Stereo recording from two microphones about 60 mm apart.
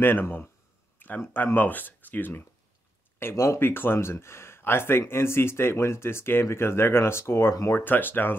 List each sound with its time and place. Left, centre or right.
0.0 s speech: left
3.2 s speech: left
7.7 s speech: left